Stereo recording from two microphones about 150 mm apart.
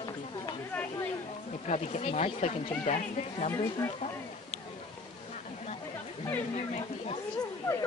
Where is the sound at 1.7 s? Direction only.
45° left (ahead or behind).